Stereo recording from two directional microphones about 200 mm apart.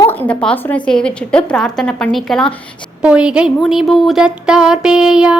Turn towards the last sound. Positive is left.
turn(degrees=-5)  # may be behind; listen again after turning